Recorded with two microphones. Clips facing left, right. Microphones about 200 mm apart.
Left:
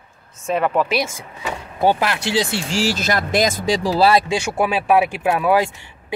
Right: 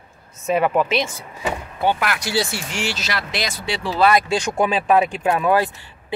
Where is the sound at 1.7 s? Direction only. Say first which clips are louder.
Left 5 dB; 35° left (ahead or behind).